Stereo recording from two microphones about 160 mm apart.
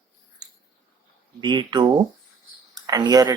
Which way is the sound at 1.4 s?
30° right (ahead or behind).